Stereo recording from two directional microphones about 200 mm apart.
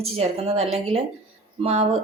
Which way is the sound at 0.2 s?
30° right (ahead or behind).